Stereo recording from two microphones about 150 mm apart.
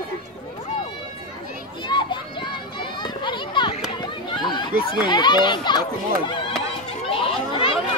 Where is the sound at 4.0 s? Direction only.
30° left (ahead or behind).